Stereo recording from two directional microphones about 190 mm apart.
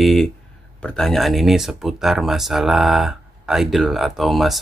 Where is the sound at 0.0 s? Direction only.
Centre (ahead or behind).